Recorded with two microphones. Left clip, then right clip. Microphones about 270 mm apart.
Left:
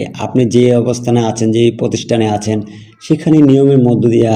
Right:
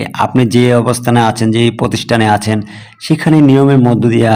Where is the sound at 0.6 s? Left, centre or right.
Right.